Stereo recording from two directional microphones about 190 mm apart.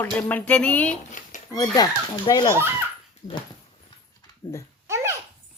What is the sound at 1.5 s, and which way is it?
Speech, 20° left (ahead or behind).